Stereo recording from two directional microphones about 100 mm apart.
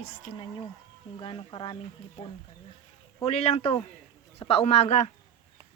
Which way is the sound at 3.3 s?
85° left.